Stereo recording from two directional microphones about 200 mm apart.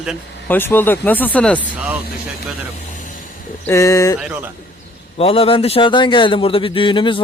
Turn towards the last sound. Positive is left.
turn(degrees=25)  # may be behind; listen again after turning